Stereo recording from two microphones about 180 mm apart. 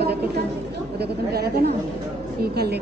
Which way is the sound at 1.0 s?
60° right (ahead or behind).